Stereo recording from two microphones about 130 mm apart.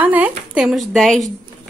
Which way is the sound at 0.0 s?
10° right (ahead or behind).